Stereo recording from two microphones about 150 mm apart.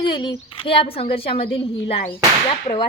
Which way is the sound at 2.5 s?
40° left (ahead or behind).